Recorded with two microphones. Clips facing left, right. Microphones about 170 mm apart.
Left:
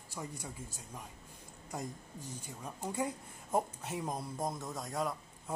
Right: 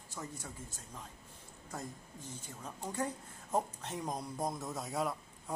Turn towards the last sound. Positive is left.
turn(degrees=0)  # may be behind; listen again after turning